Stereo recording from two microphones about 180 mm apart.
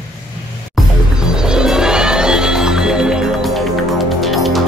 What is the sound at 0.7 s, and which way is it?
Music, 5° right (ahead or behind).